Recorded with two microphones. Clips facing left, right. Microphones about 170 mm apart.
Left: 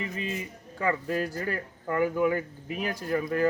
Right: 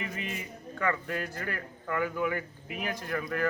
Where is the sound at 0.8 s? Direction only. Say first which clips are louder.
Left 4 dB; 30° left (ahead or behind).